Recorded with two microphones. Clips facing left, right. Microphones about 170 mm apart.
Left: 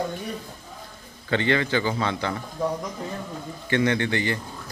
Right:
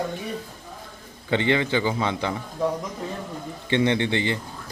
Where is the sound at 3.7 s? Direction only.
20° right (ahead or behind).